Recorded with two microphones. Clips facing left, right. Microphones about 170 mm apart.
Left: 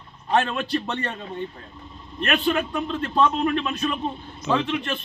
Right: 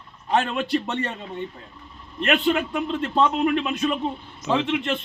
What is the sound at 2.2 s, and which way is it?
A man's voice, 20° right (ahead or behind).